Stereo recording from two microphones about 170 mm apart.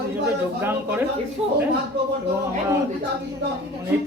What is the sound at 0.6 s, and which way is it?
Speech, 10° right (ahead or behind).